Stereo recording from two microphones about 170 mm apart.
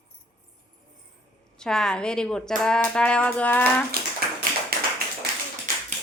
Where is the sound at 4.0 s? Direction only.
60° right (ahead or behind).